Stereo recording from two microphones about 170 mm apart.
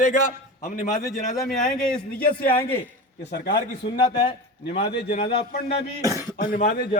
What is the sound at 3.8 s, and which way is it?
Speech, 90° left.